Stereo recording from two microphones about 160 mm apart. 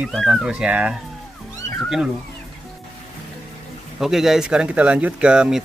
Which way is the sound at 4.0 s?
Centre (ahead or behind).